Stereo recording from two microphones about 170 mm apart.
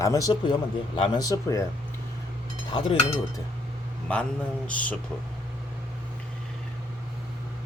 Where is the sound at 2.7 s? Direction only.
30° left (ahead or behind).